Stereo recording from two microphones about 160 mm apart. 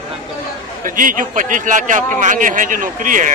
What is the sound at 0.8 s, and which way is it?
Speech, 55° right (ahead or behind).